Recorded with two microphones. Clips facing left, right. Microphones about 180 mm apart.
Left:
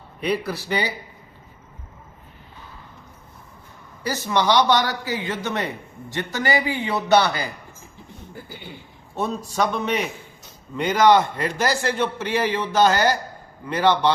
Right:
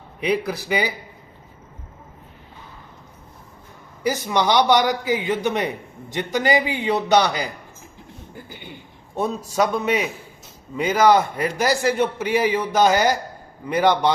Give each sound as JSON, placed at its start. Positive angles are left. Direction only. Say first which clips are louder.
{"t": 0.2, "sound": "a man's voice", "louder": "right 2 dB", "side_deg": -15}
{"t": 4.0, "sound": "a man's voice", "louder": "right 1 dB", "side_deg": -15}
{"t": 9.1, "sound": "a man's voice", "louder": "right 2 dB", "side_deg": -10}